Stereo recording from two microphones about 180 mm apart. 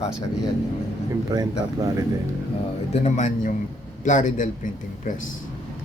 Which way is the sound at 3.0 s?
40° left (ahead or behind).